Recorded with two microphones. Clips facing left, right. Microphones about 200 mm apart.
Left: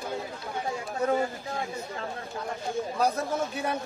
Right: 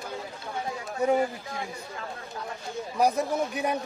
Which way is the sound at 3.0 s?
15° right (ahead or behind).